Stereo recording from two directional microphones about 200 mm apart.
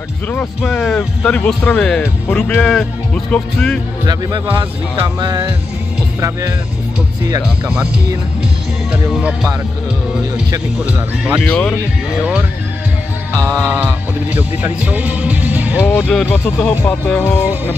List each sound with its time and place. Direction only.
0.3 s speech: 5° left (ahead or behind)
4.0 s speech: 20° right (ahead or behind)
7.2 s speech: 20° right (ahead or behind)
9.1 s speech: centre (ahead or behind)
10.9 s speech: 5° right (ahead or behind)
11.4 s speech: 5° left (ahead or behind)
12.2 s speech: 5° right (ahead or behind)
16.0 s speech: 5° left (ahead or behind)